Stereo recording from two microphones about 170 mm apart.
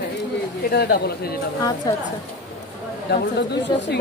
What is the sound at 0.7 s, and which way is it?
Speech, 70° left (ahead or behind).